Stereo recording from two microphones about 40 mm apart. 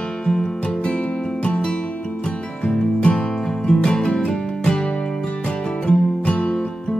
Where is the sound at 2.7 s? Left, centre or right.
Left.